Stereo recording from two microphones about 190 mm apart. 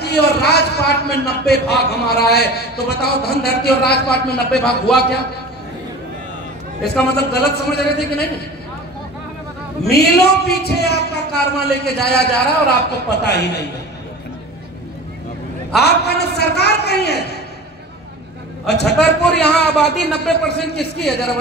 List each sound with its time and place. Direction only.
0.0 s a man's voice: 55° left (ahead or behind)
6.8 s a man's voice: 55° left (ahead or behind)
9.8 s a man's voice: 55° left (ahead or behind)
15.7 s a man's voice: 60° left (ahead or behind)
18.7 s a man's voice: 60° left (ahead or behind)